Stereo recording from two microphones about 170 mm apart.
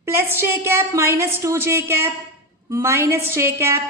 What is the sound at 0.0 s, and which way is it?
A woman's voice, 15° right (ahead or behind).